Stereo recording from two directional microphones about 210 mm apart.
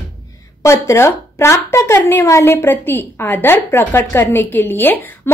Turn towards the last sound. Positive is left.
turn(degrees=10)  # may be behind; listen again after turning